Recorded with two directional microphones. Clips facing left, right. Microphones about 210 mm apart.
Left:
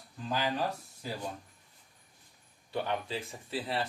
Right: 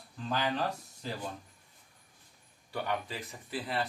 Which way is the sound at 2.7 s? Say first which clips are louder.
Left 2 dB; 25° left (ahead or behind).